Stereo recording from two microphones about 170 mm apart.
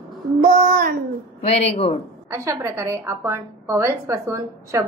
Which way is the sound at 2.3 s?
15° right (ahead or behind).